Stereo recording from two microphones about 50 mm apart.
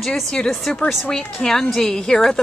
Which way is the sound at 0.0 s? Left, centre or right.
Centre.